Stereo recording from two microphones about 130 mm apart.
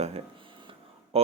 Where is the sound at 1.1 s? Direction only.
50° right (ahead or behind).